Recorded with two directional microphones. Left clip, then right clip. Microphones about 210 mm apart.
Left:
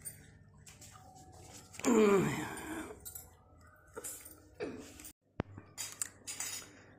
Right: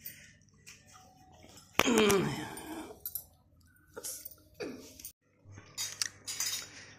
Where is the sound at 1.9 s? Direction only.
5° left (ahead or behind).